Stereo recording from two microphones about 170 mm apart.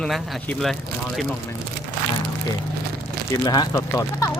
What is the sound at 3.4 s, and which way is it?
Speech, 25° left (ahead or behind).